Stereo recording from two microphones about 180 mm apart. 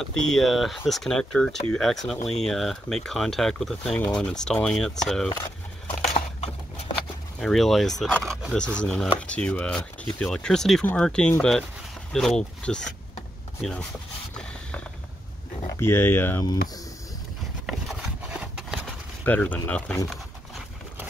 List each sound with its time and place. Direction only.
0.2 s speech: centre (ahead or behind)
6.0 s a sound: 35° left (ahead or behind)
7.3 s speech: centre (ahead or behind)
15.6 s speech: 15° left (ahead or behind)
17.6 s a sound: 5° right (ahead or behind)
19.2 s speech: 10° left (ahead or behind)